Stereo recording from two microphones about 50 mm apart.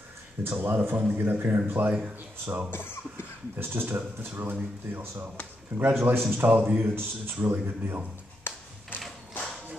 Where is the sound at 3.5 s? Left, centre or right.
Right.